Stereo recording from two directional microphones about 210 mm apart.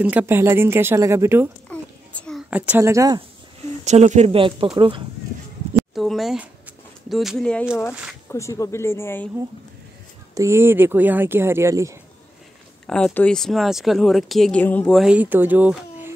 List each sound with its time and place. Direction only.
0.0 s speech: 5° right (ahead or behind)
1.7 s a sound: 5° left (ahead or behind)
2.5 s speech: 5° right (ahead or behind)
3.8 s speech: 35° right (ahead or behind)
5.8 s a sound: centre (ahead or behind)
7.1 s speech: centre (ahead or behind)
10.3 s speech: 15° right (ahead or behind)
12.8 s speech: 5° left (ahead or behind)